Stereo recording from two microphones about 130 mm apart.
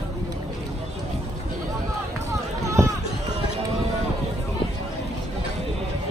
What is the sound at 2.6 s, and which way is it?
Run, 25° right (ahead or behind).